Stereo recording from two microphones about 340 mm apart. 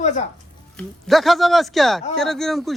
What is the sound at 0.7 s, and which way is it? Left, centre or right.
Speech, centre.